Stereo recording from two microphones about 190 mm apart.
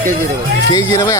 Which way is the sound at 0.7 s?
20° left (ahead or behind).